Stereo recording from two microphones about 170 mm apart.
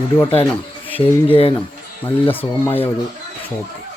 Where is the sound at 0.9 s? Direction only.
30° left (ahead or behind).